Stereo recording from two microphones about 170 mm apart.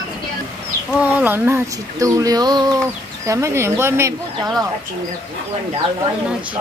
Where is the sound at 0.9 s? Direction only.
10° right (ahead or behind).